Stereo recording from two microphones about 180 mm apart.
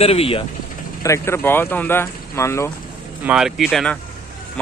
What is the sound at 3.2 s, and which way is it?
Speech, 5° right (ahead or behind).